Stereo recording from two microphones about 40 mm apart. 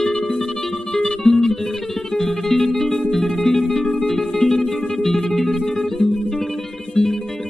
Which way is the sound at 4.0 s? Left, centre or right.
Centre.